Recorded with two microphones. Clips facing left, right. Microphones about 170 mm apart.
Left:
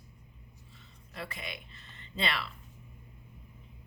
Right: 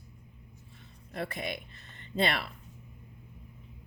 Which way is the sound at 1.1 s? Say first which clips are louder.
Right 7 dB; 50° right (ahead or behind).